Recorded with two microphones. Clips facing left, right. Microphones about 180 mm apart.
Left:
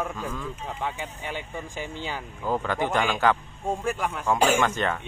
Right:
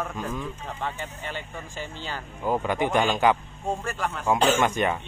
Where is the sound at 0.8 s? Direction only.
10° left (ahead or behind).